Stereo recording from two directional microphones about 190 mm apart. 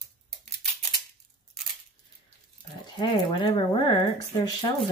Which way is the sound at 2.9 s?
25° left (ahead or behind).